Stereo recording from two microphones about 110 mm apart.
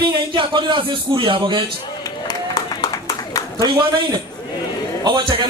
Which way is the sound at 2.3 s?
35° left (ahead or behind).